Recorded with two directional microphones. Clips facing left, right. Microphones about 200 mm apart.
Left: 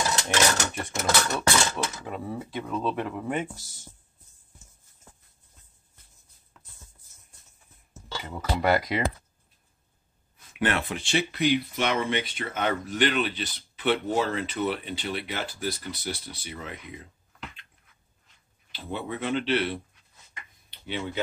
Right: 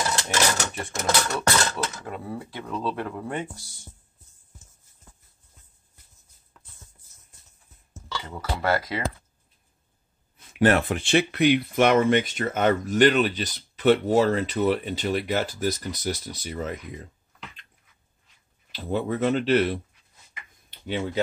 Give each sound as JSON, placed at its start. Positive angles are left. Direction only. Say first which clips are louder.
{"t": 0.3, "sound": "dishes", "louder": "left 2 dB", "side_deg": 0}
{"t": 1.3, "sound": "a sound", "louder": "right 1 dB", "side_deg": 10}
{"t": 2.6, "sound": "speech", "louder": "even", "side_deg": 0}
{"t": 8.5, "sound": "speech", "louder": "left 1 dB", "side_deg": 20}
{"t": 10.6, "sound": "speech", "louder": "right 7 dB", "side_deg": -40}
{"t": 10.9, "sound": "speech", "louder": "right 5 dB", "side_deg": -55}
{"t": 18.7, "sound": "speech", "louder": "right 7 dB", "side_deg": -40}